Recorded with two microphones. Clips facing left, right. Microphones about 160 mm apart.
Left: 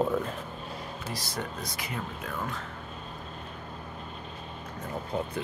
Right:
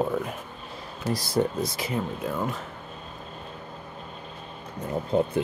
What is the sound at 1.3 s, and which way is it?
Speech, 25° right (ahead or behind).